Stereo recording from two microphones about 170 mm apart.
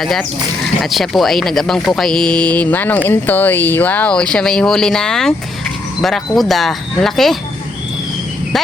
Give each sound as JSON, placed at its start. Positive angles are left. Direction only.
{"t": 0.0, "sound": "speech", "side_deg": 0}